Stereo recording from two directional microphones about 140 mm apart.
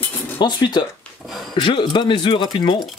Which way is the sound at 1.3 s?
Centre (ahead or behind).